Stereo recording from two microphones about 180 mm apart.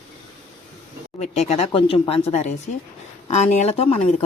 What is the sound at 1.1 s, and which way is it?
Speech, 40° left (ahead or behind).